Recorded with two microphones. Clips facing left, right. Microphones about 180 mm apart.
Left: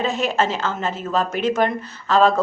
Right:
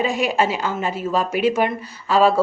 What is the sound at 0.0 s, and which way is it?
A woman's voice, 10° right (ahead or behind).